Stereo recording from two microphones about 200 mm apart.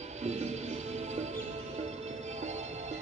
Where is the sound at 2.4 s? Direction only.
35° right (ahead or behind).